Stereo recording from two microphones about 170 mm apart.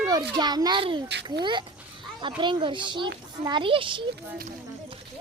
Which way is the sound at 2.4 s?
30° right (ahead or behind).